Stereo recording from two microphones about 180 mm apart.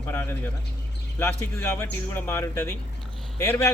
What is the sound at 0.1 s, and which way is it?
A man's voice, 10° left (ahead or behind).